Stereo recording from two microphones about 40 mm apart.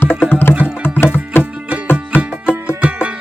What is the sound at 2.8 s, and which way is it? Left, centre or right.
Music, right.